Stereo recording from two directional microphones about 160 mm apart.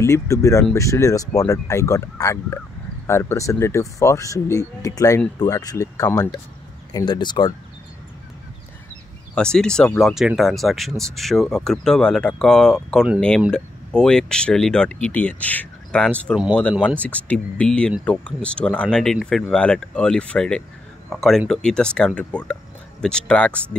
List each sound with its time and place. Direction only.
0.0 s speech: 20° left (ahead or behind)
9.3 s speech: 5° left (ahead or behind)